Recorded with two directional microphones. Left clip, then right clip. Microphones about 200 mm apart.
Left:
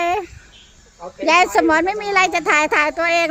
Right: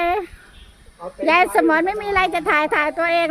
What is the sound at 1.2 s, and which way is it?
A woman's voice, 5° left (ahead or behind).